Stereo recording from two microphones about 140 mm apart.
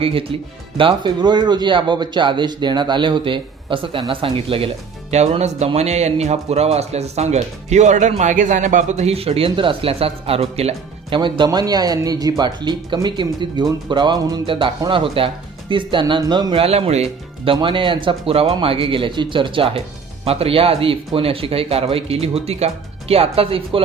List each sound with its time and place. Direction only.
0.0 s speech: 40° right (ahead or behind)